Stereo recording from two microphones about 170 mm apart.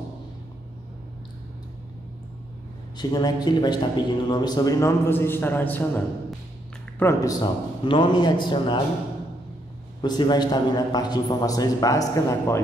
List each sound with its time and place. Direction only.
3.0 s a man's voice: 25° left (ahead or behind)
7.8 s a man's voice: 30° left (ahead or behind)
10.0 s a man's voice: 25° left (ahead or behind)